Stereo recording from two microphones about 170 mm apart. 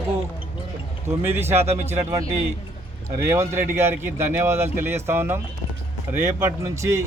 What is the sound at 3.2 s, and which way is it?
Speech, 15° right (ahead or behind).